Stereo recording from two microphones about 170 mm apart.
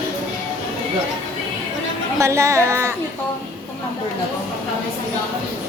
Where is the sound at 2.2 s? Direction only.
15° right (ahead or behind).